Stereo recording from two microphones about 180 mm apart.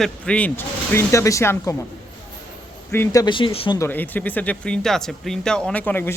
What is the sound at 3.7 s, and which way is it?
Speech, 10° left (ahead or behind).